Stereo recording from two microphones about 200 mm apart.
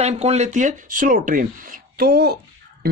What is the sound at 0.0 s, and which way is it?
Speech, 35° right (ahead or behind).